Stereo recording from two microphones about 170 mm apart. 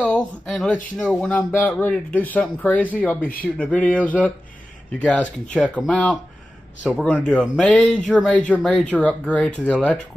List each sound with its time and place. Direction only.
0.0 s a sound: 5° left (ahead or behind)
0.9 s speech: centre (ahead or behind)
6.8 s speech: 5° right (ahead or behind)